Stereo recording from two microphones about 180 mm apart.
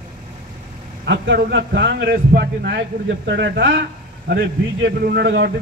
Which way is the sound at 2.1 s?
60° right (ahead or behind).